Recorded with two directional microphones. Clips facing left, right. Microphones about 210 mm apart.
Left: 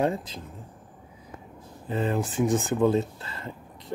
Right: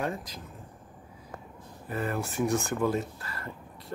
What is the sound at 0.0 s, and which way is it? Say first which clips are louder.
Speech: left 7 dB; 30° left (ahead or behind).